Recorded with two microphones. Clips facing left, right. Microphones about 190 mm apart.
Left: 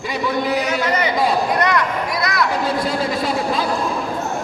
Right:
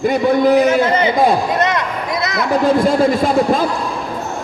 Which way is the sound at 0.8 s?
30° right (ahead or behind).